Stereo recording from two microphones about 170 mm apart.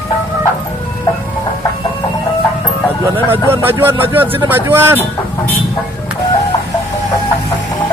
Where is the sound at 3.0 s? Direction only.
15° right (ahead or behind).